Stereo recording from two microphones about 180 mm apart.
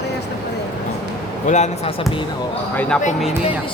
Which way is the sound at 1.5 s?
40° left (ahead or behind).